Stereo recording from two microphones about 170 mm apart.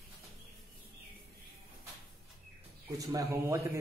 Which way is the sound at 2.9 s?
20° right (ahead or behind).